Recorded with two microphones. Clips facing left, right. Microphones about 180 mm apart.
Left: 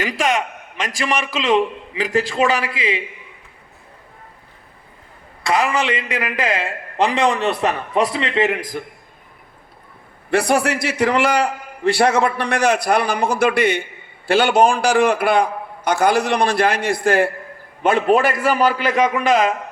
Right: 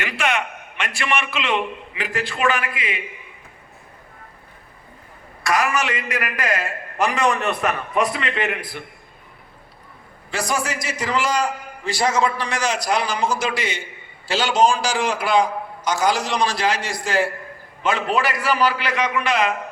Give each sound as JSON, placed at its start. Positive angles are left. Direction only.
{"t": 0.3, "sound": "a man's voice", "side_deg": 35}
{"t": 5.5, "sound": "a man's voice", "side_deg": 20}
{"t": 10.2, "sound": "a man's voice", "side_deg": 60}